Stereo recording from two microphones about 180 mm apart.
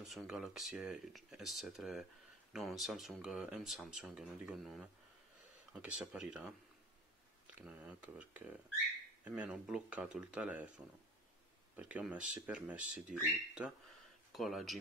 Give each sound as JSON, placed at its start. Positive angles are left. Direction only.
{"t": 0.0, "sound": "speech", "side_deg": 0}
{"t": 7.5, "sound": "speech", "side_deg": -5}
{"t": 11.7, "sound": "speech", "side_deg": -5}